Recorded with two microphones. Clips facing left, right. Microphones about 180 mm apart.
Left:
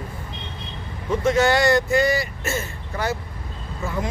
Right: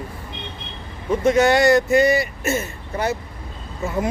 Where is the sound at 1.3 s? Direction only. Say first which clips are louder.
Right 3 dB; 20° right (ahead or behind).